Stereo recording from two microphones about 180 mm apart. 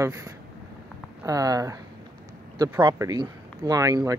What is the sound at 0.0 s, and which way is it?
Speech, 15° right (ahead or behind).